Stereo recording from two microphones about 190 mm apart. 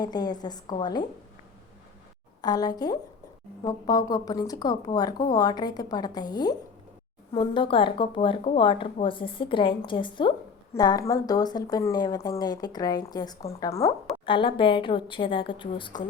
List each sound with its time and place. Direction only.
0.0 s speech: 20° left (ahead or behind)
2.4 s a woman's voice: 20° left (ahead or behind)